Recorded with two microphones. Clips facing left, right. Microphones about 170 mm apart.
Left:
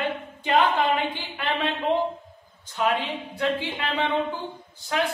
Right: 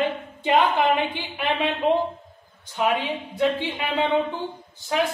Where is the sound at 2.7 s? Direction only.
20° right (ahead or behind).